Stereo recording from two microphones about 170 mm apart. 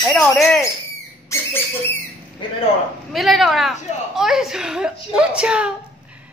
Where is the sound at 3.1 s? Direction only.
Centre (ahead or behind).